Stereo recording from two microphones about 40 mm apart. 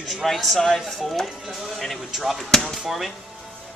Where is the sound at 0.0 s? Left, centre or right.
Centre.